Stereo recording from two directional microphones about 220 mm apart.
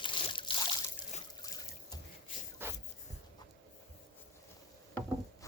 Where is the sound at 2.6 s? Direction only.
10° right (ahead or behind).